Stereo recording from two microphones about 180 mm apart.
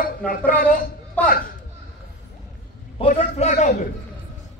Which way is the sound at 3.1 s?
45° left (ahead or behind).